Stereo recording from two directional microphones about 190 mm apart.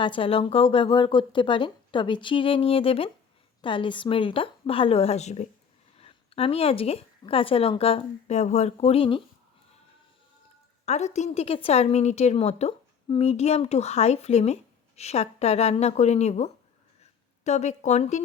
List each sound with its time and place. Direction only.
0.0 s a woman's voice: 30° left (ahead or behind)
10.8 s a woman's voice: 35° left (ahead or behind)
17.0 s a sound: 35° left (ahead or behind)